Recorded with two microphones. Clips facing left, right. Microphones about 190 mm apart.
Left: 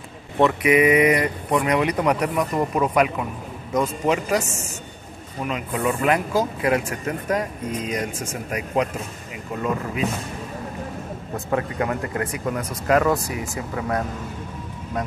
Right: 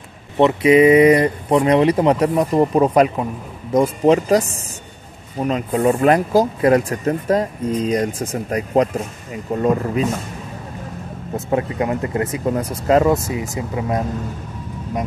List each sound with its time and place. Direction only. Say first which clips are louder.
0.4 s speech: right 5 dB; 25° right (ahead or behind)
5.4 s speech: right 7 dB; 35° right (ahead or behind)
11.3 s speech: right 4 dB; 20° right (ahead or behind)